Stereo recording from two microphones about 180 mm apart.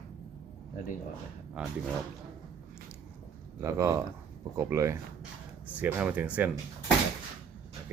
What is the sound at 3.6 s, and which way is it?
Speech, 15° right (ahead or behind).